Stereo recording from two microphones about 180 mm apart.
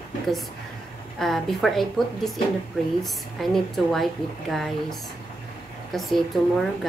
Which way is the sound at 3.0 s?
Centre (ahead or behind).